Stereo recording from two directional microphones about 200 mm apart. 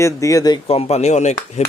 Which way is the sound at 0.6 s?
30° left (ahead or behind).